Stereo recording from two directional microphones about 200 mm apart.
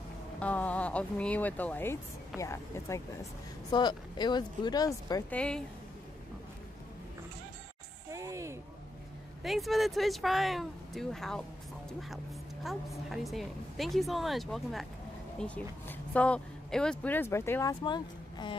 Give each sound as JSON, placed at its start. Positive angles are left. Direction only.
{"t": 0.4, "sound": "a woman's voice", "side_deg": 5}
{"t": 5.3, "sound": "a woman's voice", "side_deg": 5}
{"t": 8.1, "sound": "a sound", "side_deg": -15}
{"t": 9.4, "sound": "a woman's voice", "side_deg": 0}
{"t": 12.6, "sound": "a woman's voice", "side_deg": 0}